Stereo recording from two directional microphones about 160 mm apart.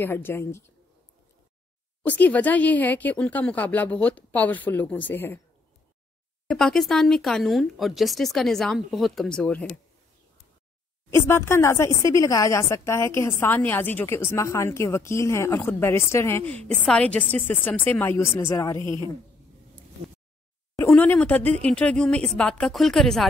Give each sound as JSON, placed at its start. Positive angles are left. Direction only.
{"t": 0.0, "sound": "a woman's voice", "side_deg": 15}
{"t": 2.0, "sound": "a woman's voice", "side_deg": 10}
{"t": 6.5, "sound": "speech", "side_deg": 0}
{"t": 11.1, "sound": "a woman's voice", "side_deg": 15}
{"t": 16.6, "sound": "a woman's voice", "side_deg": 5}
{"t": 20.9, "sound": "a woman's voice", "side_deg": 5}